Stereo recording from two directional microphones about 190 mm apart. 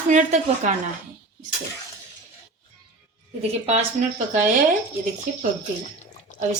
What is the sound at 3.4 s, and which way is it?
Speech, 35° right (ahead or behind).